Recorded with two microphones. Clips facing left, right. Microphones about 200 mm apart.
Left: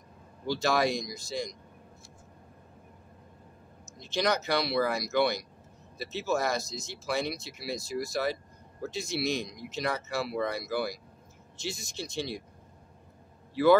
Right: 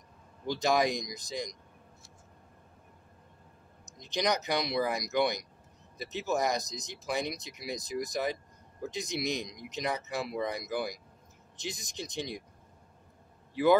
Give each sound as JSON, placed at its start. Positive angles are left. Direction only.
{"t": 0.5, "sound": "speech", "side_deg": -20}
{"t": 3.8, "sound": "speech", "side_deg": -15}